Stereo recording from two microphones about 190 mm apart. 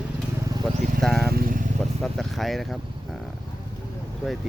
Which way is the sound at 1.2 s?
55° right (ahead or behind).